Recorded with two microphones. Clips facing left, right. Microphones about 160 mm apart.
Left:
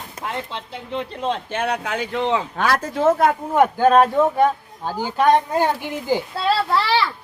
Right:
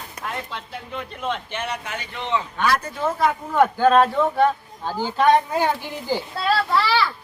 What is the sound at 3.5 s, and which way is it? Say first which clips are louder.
Speech: left 1 dB; 15° left (ahead or behind).